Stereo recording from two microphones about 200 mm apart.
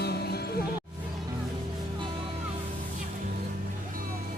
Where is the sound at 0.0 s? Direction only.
50° left (ahead or behind).